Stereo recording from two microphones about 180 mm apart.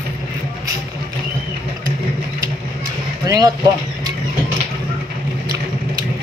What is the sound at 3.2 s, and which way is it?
Vehicle, 20° right (ahead or behind).